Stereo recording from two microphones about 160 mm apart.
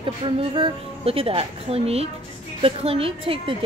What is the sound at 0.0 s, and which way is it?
A woman's voice, 35° right (ahead or behind).